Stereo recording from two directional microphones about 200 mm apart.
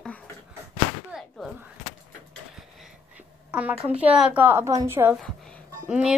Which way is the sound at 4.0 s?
5° right (ahead or behind).